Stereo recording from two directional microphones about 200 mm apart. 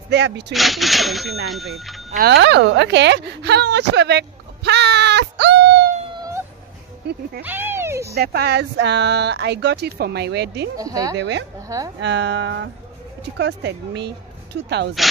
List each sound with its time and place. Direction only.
0.1 s speech: 60° right (ahead or behind)
0.5 s speech: centre (ahead or behind)
2.3 s a woman's voice: 65° right (ahead or behind)
6.1 s cat: 15° right (ahead or behind)
7.4 s speech: 10° right (ahead or behind)
8.1 s speech: 50° right (ahead or behind)
10.8 s speech: 15° right (ahead or behind)
11.1 s speech: 65° right (ahead or behind)
11.6 s speech: 15° right (ahead or behind)
12.0 s speech: 60° right (ahead or behind)